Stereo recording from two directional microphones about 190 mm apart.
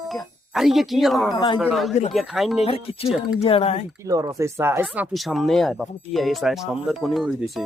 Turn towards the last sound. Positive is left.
turn(degrees=0)  # may be behind; listen again after turning